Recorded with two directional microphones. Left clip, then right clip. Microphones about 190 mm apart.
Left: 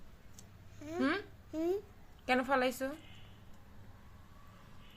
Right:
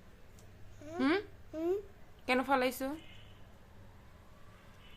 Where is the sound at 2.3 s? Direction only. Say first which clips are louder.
Right 1 dB; 25° right (ahead or behind).